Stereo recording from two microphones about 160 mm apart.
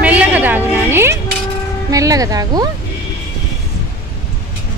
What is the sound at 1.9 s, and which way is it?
Speech, 20° right (ahead or behind).